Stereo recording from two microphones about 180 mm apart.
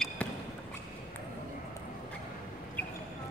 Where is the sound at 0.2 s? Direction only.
10° left (ahead or behind).